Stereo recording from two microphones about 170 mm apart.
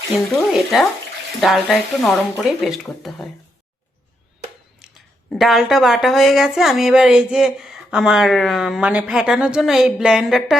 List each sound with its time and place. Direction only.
0.3 s a woman's voice: centre (ahead or behind)
4.8 s a sound: centre (ahead or behind)
5.3 s a woman's voice: centre (ahead or behind)